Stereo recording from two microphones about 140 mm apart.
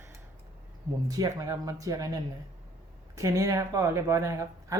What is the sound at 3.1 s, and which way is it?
Speech, 25° right (ahead or behind).